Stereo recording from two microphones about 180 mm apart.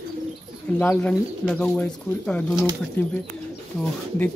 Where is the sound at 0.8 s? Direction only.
10° left (ahead or behind).